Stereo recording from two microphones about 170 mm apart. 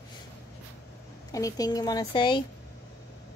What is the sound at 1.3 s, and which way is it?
A woman's voice, 20° left (ahead or behind).